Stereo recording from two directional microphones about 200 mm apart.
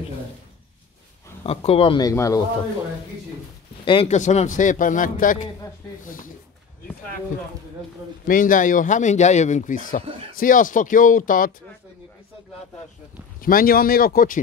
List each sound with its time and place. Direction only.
1.4 s speech: 30° left (ahead or behind)
3.8 s speech: 25° left (ahead or behind); by 6.3 s 45° left (ahead or behind)
8.3 s speech: 40° left (ahead or behind)
13.4 s speech: 45° left (ahead or behind)